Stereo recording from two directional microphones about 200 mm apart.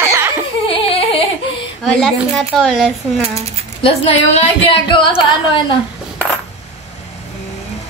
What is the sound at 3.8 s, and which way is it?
A woman's voice, 25° left (ahead or behind).